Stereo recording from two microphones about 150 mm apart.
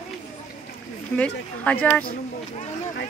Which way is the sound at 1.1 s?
10° left (ahead or behind).